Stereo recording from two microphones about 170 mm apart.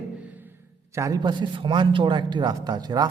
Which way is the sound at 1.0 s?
20° right (ahead or behind).